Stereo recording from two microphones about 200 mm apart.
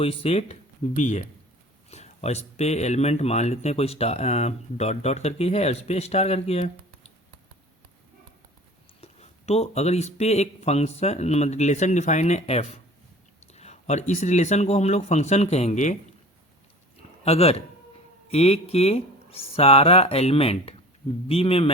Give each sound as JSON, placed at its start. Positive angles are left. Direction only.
{"t": 0.0, "sound": "speech", "side_deg": 30}
{"t": 9.0, "sound": "speech", "side_deg": 30}
{"t": 17.2, "sound": "speech", "side_deg": 30}